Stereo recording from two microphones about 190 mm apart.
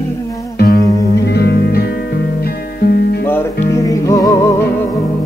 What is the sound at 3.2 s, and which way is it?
Music, 15° left (ahead or behind).